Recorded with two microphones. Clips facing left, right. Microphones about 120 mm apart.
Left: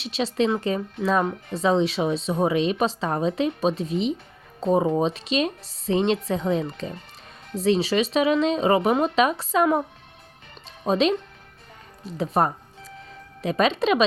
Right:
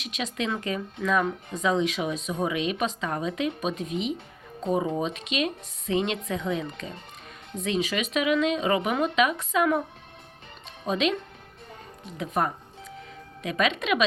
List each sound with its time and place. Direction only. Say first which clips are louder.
0.0 s a woman's voice: left 7 dB; 30° left (ahead or behind)
10.8 s a woman's voice: left 5 dB; 35° left (ahead or behind)